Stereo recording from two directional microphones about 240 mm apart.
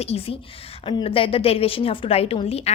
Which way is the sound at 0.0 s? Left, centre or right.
Left.